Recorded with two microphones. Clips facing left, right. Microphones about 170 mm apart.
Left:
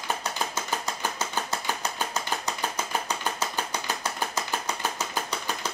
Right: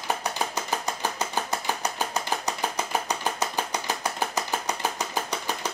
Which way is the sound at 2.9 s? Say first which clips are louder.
Right 2 dB; 15° right (ahead or behind).